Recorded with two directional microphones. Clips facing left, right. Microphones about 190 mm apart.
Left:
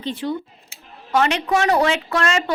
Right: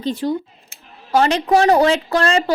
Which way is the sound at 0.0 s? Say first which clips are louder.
Right 4 dB; 40° right (ahead or behind).